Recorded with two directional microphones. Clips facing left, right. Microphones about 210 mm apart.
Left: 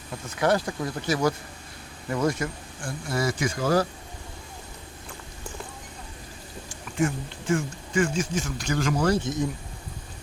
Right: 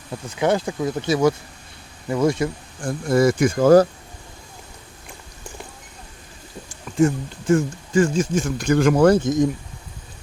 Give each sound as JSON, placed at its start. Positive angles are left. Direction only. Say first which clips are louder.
{"t": 0.3, "sound": "speech", "louder": "right 3 dB", "side_deg": -20}
{"t": 3.1, "sound": "speech", "louder": "right 10 dB", "side_deg": -50}
{"t": 7.0, "sound": "speech", "louder": "right 7 dB", "side_deg": -40}
{"t": 8.4, "sound": "speech", "louder": "right 9 dB", "side_deg": -55}